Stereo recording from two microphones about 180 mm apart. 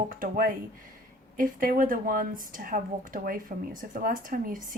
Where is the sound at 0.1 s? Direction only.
50° right (ahead or behind).